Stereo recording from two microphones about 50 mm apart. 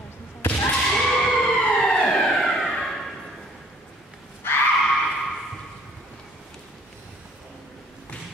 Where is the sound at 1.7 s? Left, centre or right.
Centre.